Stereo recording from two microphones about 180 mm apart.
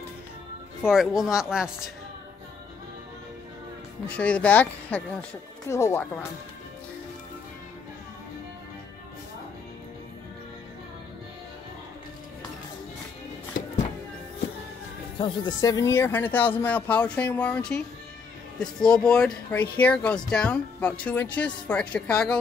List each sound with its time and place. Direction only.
0.8 s speech: centre (ahead or behind)
4.1 s speech: 5° left (ahead or behind)
15.1 s speech: 25° left (ahead or behind); by 22.4 s 5° left (ahead or behind)